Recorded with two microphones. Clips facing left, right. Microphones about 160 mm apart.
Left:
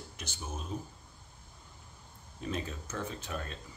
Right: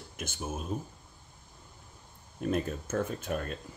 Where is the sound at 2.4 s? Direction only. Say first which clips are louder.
Right 7 dB; 50° right (ahead or behind).